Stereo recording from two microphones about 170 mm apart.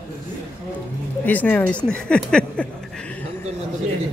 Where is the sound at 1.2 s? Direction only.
10° left (ahead or behind).